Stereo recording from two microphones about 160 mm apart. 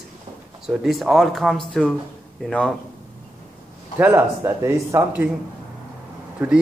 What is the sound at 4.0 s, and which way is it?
Speech, 15° right (ahead or behind).